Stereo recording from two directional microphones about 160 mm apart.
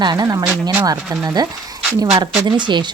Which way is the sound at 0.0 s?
25° right (ahead or behind).